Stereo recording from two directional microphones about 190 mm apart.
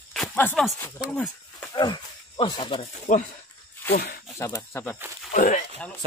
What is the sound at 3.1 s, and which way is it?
Speech, 40° left (ahead or behind).